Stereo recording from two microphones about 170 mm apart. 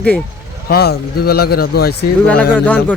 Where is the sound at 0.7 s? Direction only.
65° left (ahead or behind).